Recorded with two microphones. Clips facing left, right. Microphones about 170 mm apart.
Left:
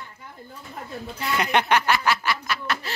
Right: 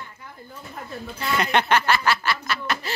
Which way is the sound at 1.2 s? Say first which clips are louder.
Right 1 dB; 15° left (ahead or behind).